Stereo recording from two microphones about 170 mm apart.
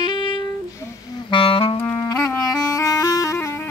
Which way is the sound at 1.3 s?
30° left (ahead or behind).